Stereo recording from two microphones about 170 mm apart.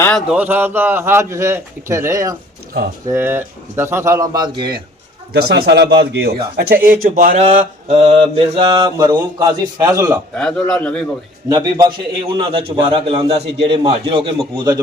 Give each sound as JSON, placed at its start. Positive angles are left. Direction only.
{"t": 0.0, "sound": "speech", "side_deg": 5}
{"t": 5.3, "sound": "a man's voice", "side_deg": -70}
{"t": 6.8, "sound": "speech", "side_deg": -55}
{"t": 7.3, "sound": "mantra", "side_deg": -35}
{"t": 10.3, "sound": "a man's voice", "side_deg": 5}
{"t": 11.4, "sound": "a man's voice", "side_deg": -20}
{"t": 13.7, "sound": "mantra", "side_deg": -30}
{"t": 14.1, "sound": "a man's voice", "side_deg": -30}